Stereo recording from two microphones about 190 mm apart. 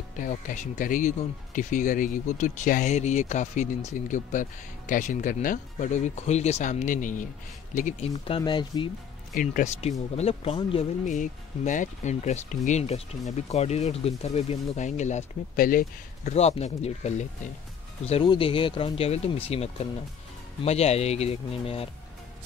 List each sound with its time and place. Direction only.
0.2 s speech: 40° left (ahead or behind)
8.4 s speech: 25° left (ahead or behind)
9.3 s speech: 45° left (ahead or behind)